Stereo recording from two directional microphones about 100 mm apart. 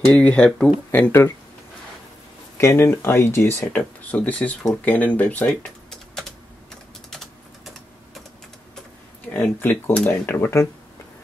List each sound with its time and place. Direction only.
0.1 s speech: 10° left (ahead or behind)
2.5 s speech: 25° left (ahead or behind); by 6.3 s 5° left (ahead or behind)
7.1 s typing: centre (ahead or behind)
9.3 s speech: 20° left (ahead or behind)